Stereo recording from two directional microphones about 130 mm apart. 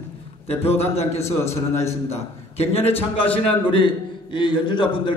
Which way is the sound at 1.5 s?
20° left (ahead or behind).